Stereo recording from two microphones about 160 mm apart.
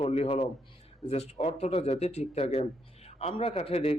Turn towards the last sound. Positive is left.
turn(degrees=40)  # may be behind; listen again after turning